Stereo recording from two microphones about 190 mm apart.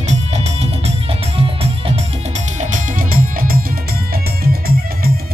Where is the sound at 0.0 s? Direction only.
35° right (ahead or behind); by 5.1 s 50° right (ahead or behind).